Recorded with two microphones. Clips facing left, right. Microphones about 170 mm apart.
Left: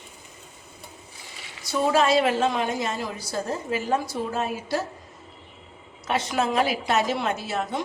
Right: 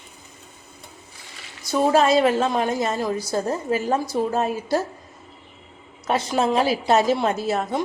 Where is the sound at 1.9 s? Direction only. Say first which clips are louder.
Right 3 dB; 40° right (ahead or behind).